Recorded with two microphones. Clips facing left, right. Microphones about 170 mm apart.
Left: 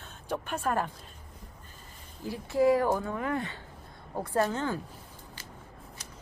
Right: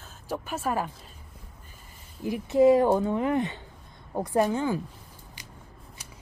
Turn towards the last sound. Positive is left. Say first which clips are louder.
# right 4 dB
turn(degrees=-10)  # may be behind; listen again after turning